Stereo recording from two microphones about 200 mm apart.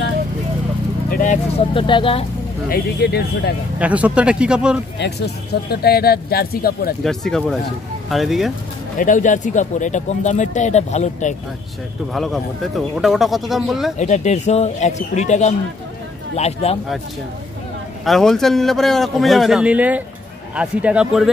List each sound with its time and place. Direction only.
1.1 s vehicle: 40° left (ahead or behind)
1.7 s speech: 25° left (ahead or behind)
2.7 s speech: 55° left (ahead or behind)
3.8 s speech: 5° right (ahead or behind)
4.9 s speech: 55° left (ahead or behind)
7.0 s speech: centre (ahead or behind)
8.9 s speech: 40° left (ahead or behind)
12.1 s speech: centre (ahead or behind)
13.9 s speech: 35° left (ahead or behind)
18.0 s speech: centre (ahead or behind)